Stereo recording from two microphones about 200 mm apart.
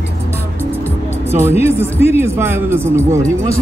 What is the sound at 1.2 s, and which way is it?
Speech, 10° right (ahead or behind).